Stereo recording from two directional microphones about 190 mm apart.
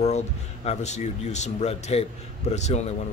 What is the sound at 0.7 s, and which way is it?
Speech, 35° left (ahead or behind).